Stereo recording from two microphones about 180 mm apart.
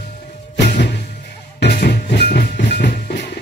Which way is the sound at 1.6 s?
70° left (ahead or behind).